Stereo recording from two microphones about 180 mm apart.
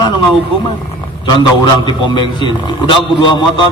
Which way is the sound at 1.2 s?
25° left (ahead or behind).